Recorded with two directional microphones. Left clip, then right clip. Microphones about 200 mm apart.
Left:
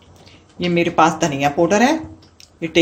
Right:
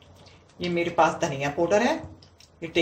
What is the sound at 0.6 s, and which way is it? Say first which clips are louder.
Speech: left 7 dB; 50° left (ahead or behind).